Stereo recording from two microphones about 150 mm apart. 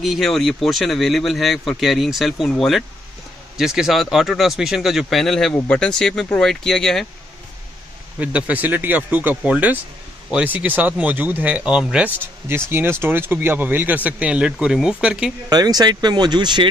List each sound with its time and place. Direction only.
0.0 s speech: centre (ahead or behind)
8.2 s speech: 10° right (ahead or behind)
15.5 s speech: 25° right (ahead or behind)